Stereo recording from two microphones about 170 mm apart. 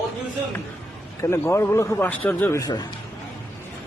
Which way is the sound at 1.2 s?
15° left (ahead or behind).